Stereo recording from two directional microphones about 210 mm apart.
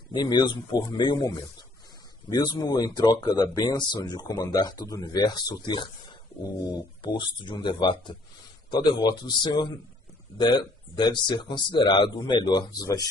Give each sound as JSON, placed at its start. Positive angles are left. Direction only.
{"t": 0.1, "sound": "speech", "side_deg": 20}